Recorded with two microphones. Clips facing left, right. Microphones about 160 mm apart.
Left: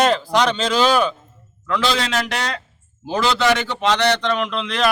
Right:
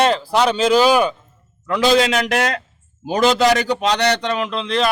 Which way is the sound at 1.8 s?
50° right (ahead or behind).